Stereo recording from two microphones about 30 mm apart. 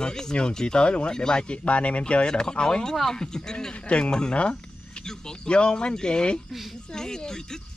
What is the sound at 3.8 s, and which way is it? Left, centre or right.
Speech, left.